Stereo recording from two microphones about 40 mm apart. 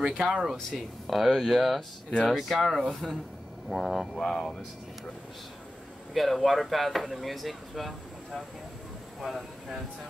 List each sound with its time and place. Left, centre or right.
0.0 s speech: centre
0.7 s speech: centre
4.2 s speech: centre
6.1 s speech: centre
9.2 s speech: centre